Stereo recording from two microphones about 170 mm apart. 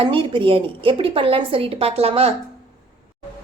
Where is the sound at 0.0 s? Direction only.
30° right (ahead or behind).